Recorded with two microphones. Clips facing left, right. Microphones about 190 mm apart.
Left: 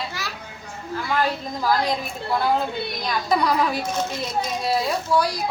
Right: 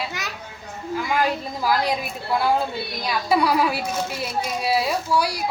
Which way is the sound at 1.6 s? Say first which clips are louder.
Even; 10° right (ahead or behind).